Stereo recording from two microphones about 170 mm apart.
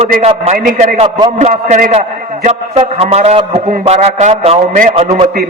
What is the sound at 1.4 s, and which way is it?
A man's voice, 40° right (ahead or behind).